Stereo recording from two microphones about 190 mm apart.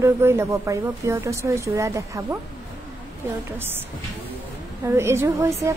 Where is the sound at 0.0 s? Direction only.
15° right (ahead or behind).